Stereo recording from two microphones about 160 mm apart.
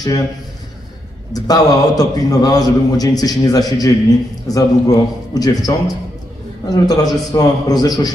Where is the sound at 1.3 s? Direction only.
25° left (ahead or behind).